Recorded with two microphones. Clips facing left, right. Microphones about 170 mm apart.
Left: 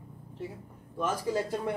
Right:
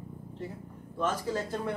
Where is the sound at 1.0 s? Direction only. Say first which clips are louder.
Left 1 dB; 10° left (ahead or behind).